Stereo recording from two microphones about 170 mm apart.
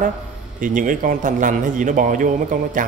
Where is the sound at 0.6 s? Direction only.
50° right (ahead or behind).